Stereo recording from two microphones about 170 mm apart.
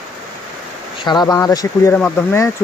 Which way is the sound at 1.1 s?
25° left (ahead or behind).